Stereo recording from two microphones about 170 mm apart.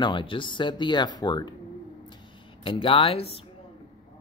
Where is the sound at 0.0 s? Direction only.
30° left (ahead or behind).